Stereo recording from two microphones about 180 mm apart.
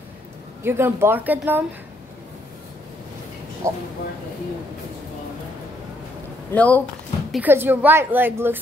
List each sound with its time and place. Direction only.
0.7 s a woman's voice: 15° right (ahead or behind)
3.6 s a woman's voice: 15° right (ahead or behind)
6.5 s speech: 10° left (ahead or behind)
7.3 s a woman's voice: 10° right (ahead or behind)